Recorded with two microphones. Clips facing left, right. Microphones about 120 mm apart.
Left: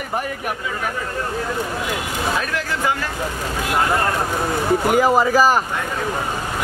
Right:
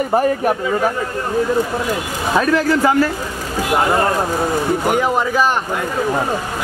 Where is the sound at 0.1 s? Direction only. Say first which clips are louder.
Right 8 dB; 35° right (ahead or behind).